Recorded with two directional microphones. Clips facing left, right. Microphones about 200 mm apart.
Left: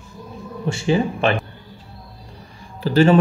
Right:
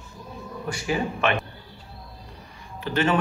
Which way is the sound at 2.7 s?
35° left (ahead or behind).